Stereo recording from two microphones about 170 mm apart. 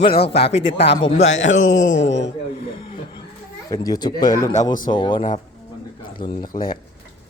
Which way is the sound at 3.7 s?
20° left (ahead or behind).